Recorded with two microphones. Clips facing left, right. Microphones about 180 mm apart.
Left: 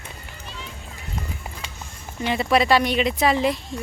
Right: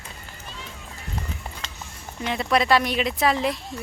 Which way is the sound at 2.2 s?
Centre (ahead or behind).